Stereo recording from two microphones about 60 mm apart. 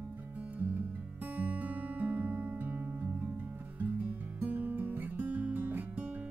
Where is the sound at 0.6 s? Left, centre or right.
Right.